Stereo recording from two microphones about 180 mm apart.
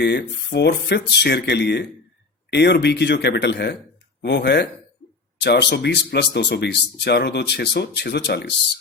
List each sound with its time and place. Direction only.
0.0 s speech: 70° left (ahead or behind)